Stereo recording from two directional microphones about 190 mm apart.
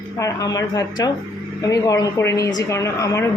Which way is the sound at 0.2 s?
20° left (ahead or behind).